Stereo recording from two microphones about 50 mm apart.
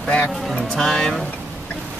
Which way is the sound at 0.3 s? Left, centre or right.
Centre.